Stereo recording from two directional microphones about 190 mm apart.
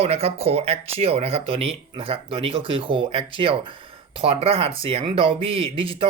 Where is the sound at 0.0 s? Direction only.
30° right (ahead or behind).